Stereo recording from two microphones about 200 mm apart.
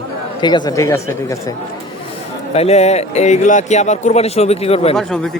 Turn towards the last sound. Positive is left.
turn(degrees=0)  # may be behind; listen again after turning